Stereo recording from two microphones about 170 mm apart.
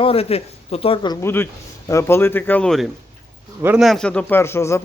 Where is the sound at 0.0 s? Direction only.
35° left (ahead or behind).